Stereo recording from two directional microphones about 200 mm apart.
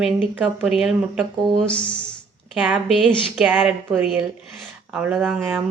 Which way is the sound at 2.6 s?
10° right (ahead or behind).